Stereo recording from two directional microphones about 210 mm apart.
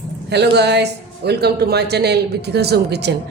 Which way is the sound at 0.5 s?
55° right (ahead or behind).